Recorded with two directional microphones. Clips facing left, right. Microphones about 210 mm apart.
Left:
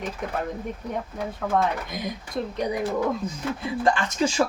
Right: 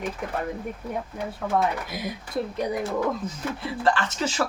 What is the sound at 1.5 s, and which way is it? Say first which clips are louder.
Speech: even; 5° right (ahead or behind).